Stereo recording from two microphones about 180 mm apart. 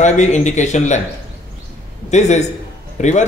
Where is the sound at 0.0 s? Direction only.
40° left (ahead or behind).